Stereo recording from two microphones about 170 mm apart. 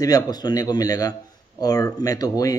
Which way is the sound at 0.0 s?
25° left (ahead or behind).